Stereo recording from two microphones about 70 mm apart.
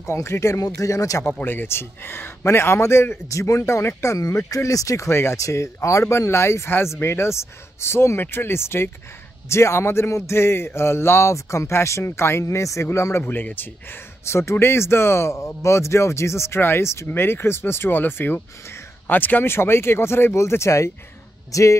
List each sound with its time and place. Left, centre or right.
0.0 s speech: left
1.4 s speech: left
13.3 s speech: left